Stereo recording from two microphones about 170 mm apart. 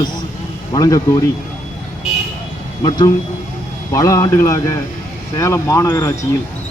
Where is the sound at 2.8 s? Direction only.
25° left (ahead or behind).